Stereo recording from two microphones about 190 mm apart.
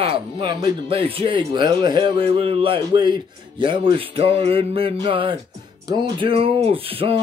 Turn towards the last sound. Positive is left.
turn(degrees=-30)  # may be behind; listen again after turning